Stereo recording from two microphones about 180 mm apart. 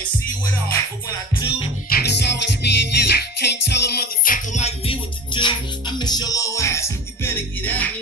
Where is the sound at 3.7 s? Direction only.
60° left (ahead or behind); by 7.9 s 10° left (ahead or behind).